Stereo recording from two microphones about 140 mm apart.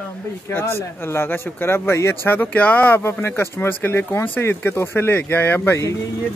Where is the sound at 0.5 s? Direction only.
15° left (ahead or behind).